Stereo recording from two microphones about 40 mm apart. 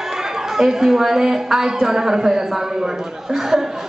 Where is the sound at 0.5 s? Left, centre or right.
Centre.